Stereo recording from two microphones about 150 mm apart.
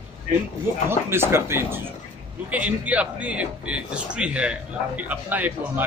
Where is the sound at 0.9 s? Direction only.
15° right (ahead or behind).